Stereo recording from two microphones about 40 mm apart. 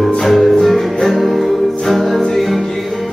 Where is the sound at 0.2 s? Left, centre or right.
Centre.